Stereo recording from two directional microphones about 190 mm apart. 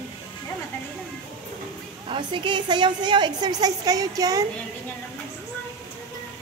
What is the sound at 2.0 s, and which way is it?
A woman's voice, 25° right (ahead or behind).